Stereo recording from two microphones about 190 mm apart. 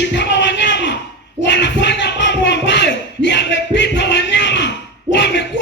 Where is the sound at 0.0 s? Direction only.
65° left (ahead or behind).